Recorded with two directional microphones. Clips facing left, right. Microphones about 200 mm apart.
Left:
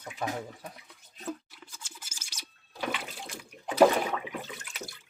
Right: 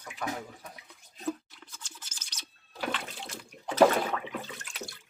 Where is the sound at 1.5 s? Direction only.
5° left (ahead or behind).